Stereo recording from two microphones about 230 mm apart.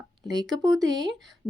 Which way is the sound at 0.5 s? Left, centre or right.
Centre.